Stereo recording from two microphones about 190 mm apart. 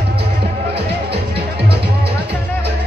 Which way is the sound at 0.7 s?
60° right (ahead or behind).